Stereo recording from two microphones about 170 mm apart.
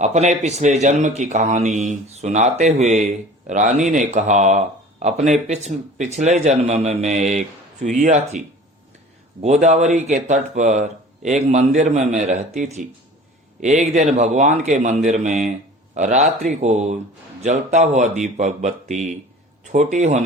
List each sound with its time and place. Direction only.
0.0 s speech: 40° right (ahead or behind)
9.4 s speech: 40° right (ahead or behind)